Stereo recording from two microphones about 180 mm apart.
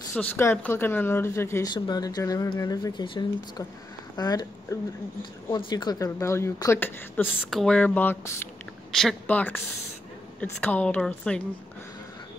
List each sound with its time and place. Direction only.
0.1 s speech: 10° left (ahead or behind)